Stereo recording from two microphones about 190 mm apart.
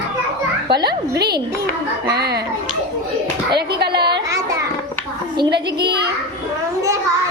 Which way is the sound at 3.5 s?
60° right (ahead or behind).